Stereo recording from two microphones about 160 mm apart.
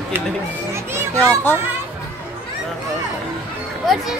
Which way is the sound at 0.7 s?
15° right (ahead or behind).